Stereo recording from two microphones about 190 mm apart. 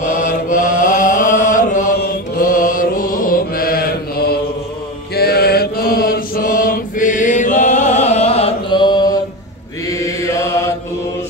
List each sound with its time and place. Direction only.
0.1 s chant: 45° left (ahead or behind)
2.0 s mantra: 50° left (ahead or behind); by 10.7 s 15° left (ahead or behind)